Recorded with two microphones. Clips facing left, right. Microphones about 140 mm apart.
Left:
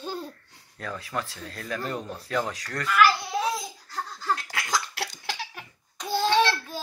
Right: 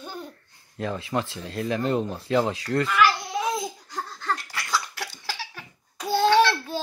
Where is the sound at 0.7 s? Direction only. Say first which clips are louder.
Right 5 dB; 25° right (ahead or behind).